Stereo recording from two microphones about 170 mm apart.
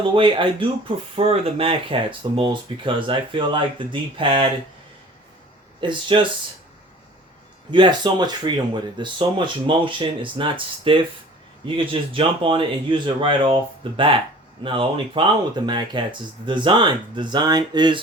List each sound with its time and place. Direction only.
0.0 s speech: 30° right (ahead or behind)
5.8 s speech: 30° right (ahead or behind)
7.7 s speech: 25° right (ahead or behind)